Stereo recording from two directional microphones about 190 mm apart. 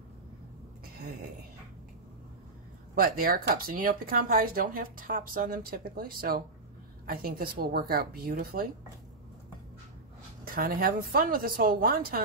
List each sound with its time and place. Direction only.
2.9 s speech: 50° right (ahead or behind)
10.4 s speech: 50° right (ahead or behind)